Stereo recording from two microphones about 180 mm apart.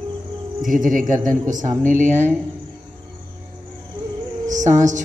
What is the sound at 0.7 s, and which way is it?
Speech, 45° right (ahead or behind).